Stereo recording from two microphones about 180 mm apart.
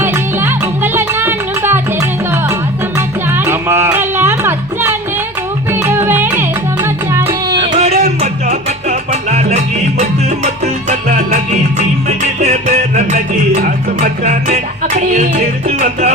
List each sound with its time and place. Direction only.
0.0 s music: 10° right (ahead or behind)
7.3 s music: 30° right (ahead or behind)